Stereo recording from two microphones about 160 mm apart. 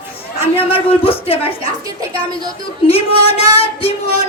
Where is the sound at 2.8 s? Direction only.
35° left (ahead or behind).